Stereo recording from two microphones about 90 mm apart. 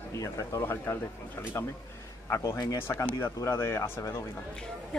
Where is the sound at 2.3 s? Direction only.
35° left (ahead or behind).